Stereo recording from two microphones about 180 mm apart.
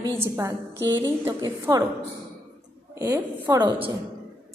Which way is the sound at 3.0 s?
15° right (ahead or behind).